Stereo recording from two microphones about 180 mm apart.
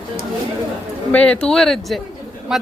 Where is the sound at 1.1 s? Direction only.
5° left (ahead or behind).